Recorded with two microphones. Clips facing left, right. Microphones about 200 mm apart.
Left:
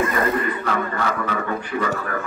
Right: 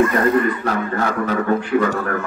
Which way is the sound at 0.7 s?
40° right (ahead or behind).